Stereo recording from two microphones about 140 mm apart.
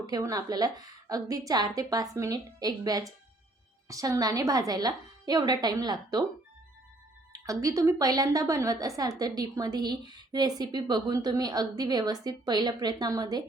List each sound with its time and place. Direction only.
0.0 s a woman's voice: 25° right (ahead or behind)
7.3 s a woman's voice: 25° right (ahead or behind)